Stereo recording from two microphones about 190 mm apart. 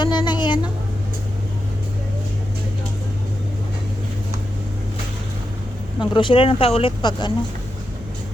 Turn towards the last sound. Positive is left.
turn(degrees=25)  # may be behind; listen again after turning